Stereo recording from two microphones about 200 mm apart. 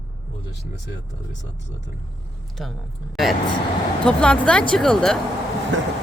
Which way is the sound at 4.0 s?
5° left (ahead or behind).